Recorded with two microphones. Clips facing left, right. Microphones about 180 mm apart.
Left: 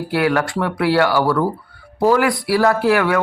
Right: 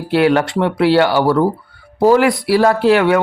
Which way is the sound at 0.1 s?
25° right (ahead or behind).